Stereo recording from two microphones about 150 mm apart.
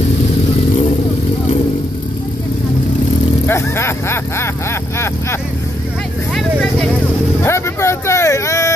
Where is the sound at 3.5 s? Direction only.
15° left (ahead or behind).